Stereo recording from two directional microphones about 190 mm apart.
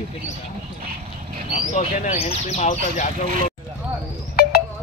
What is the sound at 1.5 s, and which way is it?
Speech, 35° left (ahead or behind).